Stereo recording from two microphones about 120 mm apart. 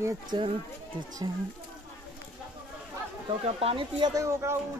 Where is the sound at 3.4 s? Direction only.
55° right (ahead or behind).